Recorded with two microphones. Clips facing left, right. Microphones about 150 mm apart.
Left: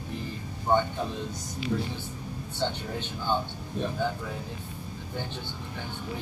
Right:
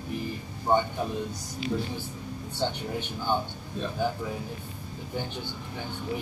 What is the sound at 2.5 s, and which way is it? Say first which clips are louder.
Speech: right 1 dB; 15° right (ahead or behind).